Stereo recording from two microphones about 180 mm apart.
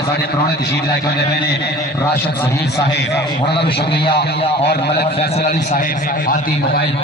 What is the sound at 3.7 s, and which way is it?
A man's voice, 65° left (ahead or behind).